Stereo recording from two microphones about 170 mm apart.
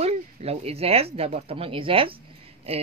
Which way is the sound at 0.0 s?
35° right (ahead or behind).